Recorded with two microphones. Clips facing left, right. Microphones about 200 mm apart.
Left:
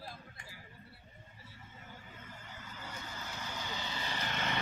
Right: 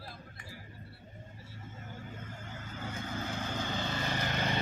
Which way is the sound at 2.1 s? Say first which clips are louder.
Right 6 dB; 50° right (ahead or behind).